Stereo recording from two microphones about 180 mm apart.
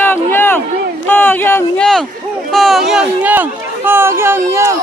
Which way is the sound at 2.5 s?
Centre (ahead or behind).